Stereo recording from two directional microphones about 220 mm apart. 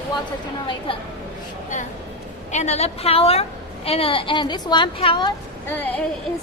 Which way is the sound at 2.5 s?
30° left (ahead or behind).